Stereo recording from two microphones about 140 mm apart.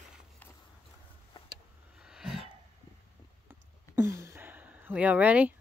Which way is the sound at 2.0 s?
5° right (ahead or behind).